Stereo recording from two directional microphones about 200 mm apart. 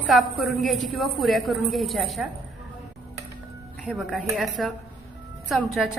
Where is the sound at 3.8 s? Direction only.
Centre (ahead or behind).